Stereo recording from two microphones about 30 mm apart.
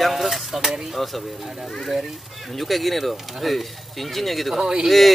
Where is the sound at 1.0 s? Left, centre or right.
Centre.